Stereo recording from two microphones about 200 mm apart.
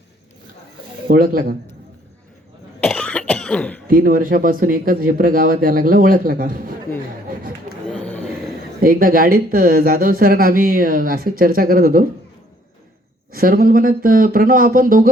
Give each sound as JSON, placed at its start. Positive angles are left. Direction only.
{"t": 1.0, "sound": "speech", "side_deg": -45}
{"t": 2.8, "sound": "cough", "side_deg": 5}
{"t": 3.8, "sound": "speech", "side_deg": -45}
{"t": 7.9, "sound": "a sound", "side_deg": 5}
{"t": 8.8, "sound": "speech", "side_deg": -45}
{"t": 13.3, "sound": "speech", "side_deg": -45}